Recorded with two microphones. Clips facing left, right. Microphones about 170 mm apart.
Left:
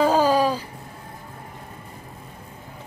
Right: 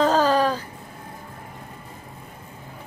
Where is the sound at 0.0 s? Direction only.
10° left (ahead or behind).